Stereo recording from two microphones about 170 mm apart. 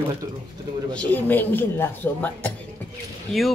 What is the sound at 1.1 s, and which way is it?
Speech, 10° left (ahead or behind).